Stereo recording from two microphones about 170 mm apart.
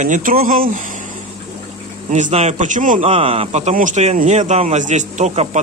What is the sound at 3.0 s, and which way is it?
A man's voice, 35° right (ahead or behind).